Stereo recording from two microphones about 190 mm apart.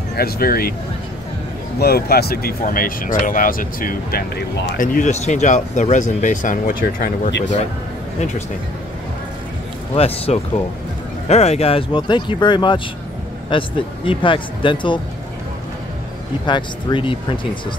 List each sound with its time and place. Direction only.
0.1 s speech: 50° left (ahead or behind)
1.8 s speech: 55° left (ahead or behind)
9.9 s speech: 30° left (ahead or behind)
16.4 s speech: 25° left (ahead or behind)